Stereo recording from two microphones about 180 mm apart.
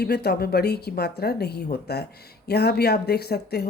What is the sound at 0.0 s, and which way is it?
Speech, 60° left (ahead or behind).